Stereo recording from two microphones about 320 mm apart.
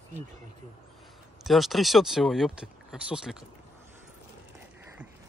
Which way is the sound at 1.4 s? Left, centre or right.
Centre.